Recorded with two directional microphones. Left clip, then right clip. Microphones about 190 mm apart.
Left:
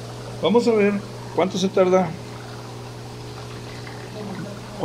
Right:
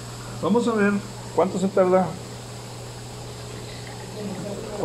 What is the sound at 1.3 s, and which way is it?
Speech, 25° left (ahead or behind).